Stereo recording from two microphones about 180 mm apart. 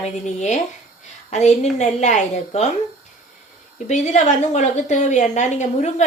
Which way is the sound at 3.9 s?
40° left (ahead or behind).